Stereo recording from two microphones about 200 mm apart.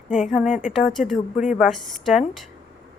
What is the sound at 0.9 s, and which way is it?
Speech, centre (ahead or behind).